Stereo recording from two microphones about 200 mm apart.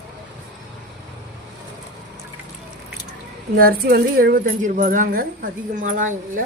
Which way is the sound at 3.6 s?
50° right (ahead or behind).